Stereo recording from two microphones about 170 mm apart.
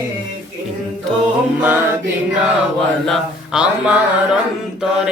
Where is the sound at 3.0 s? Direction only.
Centre (ahead or behind).